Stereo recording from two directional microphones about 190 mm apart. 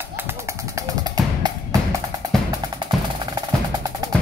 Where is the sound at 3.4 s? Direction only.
20° right (ahead or behind).